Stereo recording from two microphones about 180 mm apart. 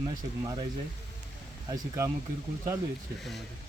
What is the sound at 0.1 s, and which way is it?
Speech, 20° right (ahead or behind).